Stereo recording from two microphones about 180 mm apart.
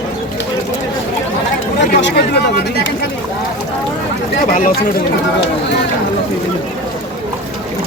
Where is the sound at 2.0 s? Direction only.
75° left (ahead or behind).